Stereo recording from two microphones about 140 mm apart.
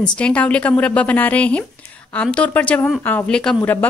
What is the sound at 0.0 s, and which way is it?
Speech, 10° left (ahead or behind).